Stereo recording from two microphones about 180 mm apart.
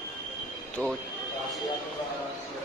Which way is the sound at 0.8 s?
10° left (ahead or behind).